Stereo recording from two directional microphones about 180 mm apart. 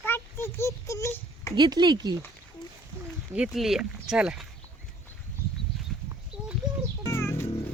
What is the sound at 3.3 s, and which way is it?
Speech, 5° right (ahead or behind).